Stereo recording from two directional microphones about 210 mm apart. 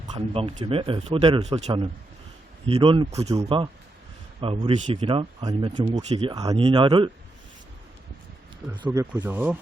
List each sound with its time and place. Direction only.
0.1 s speech: 25° right (ahead or behind)
8.7 s speech: 20° right (ahead or behind)